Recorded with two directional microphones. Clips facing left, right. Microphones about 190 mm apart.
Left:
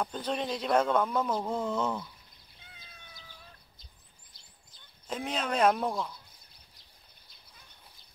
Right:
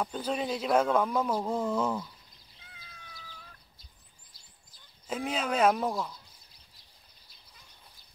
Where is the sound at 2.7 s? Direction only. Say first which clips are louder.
Right 2 dB; 25° left (ahead or behind).